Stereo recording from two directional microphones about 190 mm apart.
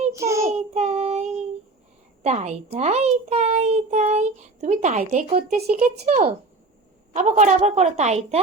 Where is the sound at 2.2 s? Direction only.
35° right (ahead or behind).